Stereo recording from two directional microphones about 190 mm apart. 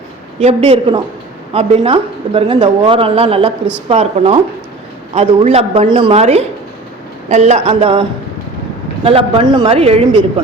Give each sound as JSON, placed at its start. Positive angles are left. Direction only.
{"t": 0.3, "sound": "a woman's voice", "side_deg": -30}
{"t": 9.0, "sound": "speech", "side_deg": -30}